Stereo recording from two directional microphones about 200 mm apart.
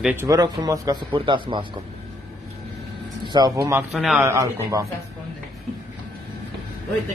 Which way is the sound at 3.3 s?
20° right (ahead or behind).